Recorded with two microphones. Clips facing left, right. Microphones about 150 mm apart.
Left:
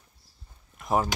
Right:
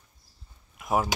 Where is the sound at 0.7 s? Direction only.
5° right (ahead or behind).